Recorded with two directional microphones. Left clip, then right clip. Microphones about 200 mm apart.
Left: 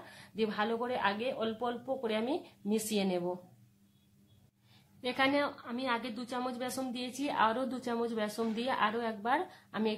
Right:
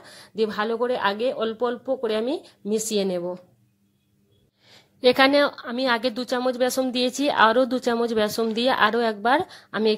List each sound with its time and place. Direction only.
0.4 s a woman's voice: 35° right (ahead or behind)
5.0 s a woman's voice: 45° right (ahead or behind)